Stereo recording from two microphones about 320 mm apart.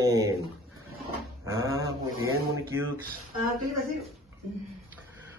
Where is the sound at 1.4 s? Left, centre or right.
Centre.